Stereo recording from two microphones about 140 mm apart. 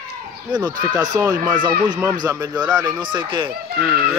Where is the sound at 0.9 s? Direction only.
25° right (ahead or behind).